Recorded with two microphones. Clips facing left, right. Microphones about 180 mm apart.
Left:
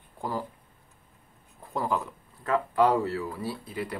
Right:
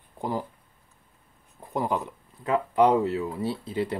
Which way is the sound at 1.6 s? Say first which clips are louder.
Right 2 dB; 15° right (ahead or behind).